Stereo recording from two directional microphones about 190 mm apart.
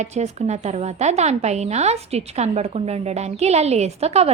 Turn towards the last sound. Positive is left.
turn(degrees=-35)  # may be behind; listen again after turning